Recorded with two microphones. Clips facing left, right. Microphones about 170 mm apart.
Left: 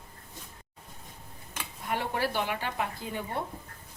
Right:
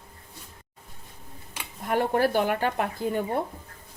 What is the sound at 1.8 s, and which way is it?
Speech, 50° right (ahead or behind).